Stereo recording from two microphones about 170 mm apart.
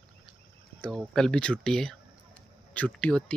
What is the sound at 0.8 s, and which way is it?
Speech, 5° left (ahead or behind).